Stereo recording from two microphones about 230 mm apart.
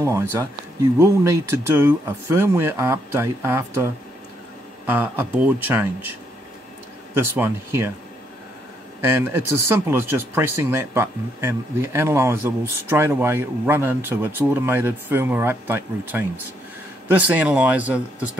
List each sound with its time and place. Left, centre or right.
0.0 s speech: centre
4.8 s speech: centre
7.2 s speech: centre
9.0 s speech: centre